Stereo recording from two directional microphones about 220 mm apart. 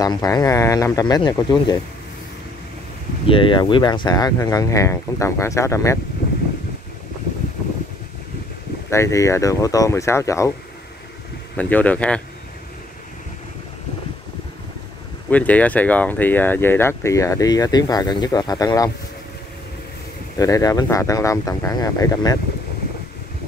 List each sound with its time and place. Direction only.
0.0 s speech: 15° left (ahead or behind)
3.3 s speech: 25° left (ahead or behind)
8.9 s speech: 15° left (ahead or behind)
11.5 s speech: 5° left (ahead or behind)
15.2 s speech: 5° left (ahead or behind)
20.3 s speech: 15° left (ahead or behind)